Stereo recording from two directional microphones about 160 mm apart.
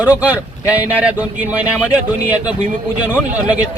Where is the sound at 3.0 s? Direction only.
10° right (ahead or behind).